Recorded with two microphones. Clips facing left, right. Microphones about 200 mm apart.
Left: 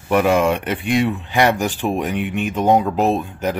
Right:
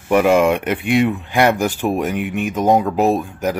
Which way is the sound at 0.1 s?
10° right (ahead or behind).